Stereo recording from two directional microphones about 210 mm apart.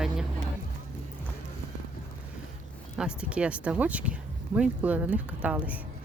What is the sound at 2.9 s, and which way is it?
Speech, 5° right (ahead or behind).